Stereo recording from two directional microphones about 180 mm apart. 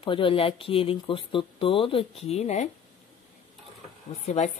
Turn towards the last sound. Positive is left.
turn(degrees=40)  # may be behind; listen again after turning